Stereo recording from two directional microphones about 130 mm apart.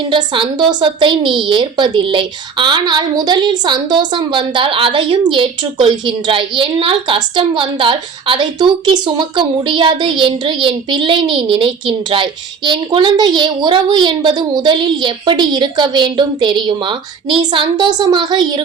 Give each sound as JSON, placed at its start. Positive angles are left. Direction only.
{"t": 0.1, "sound": "a woman's voice", "side_deg": -40}